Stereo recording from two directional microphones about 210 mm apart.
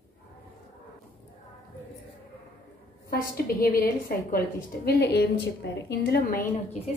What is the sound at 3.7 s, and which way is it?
A woman's voice, 45° left (ahead or behind).